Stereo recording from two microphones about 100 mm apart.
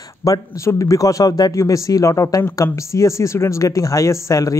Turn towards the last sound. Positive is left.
turn(degrees=30)  # may be behind; listen again after turning